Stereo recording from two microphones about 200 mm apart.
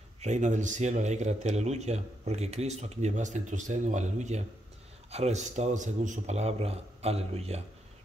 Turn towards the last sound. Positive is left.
turn(degrees=-30)  # may be behind; listen again after turning